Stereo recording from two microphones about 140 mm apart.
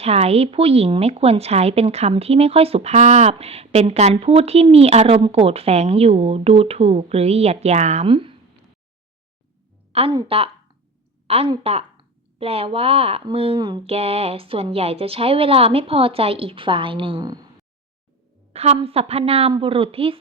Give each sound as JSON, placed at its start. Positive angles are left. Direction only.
{"t": 0.0, "sound": "speech", "side_deg": -45}
{"t": 8.1, "sound": "speech", "side_deg": -40}
{"t": 9.9, "sound": "a woman's voice", "side_deg": -45}
{"t": 13.8, "sound": "speech", "side_deg": -45}
{"t": 18.5, "sound": "speech", "side_deg": -45}